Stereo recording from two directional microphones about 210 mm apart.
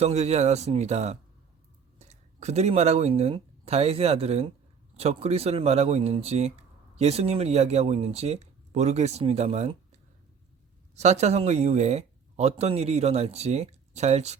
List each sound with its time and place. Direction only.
0.0 s speech: 30° right (ahead or behind)
10.9 s speech: 30° right (ahead or behind)